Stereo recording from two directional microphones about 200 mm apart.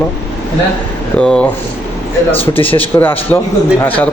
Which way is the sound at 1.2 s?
5° left (ahead or behind).